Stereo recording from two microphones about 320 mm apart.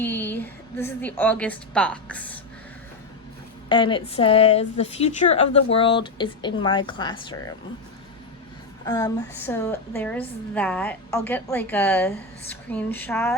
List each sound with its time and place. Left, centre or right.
0.0 s a woman's voice: centre
3.7 s a woman's voice: centre
8.8 s a woman's voice: centre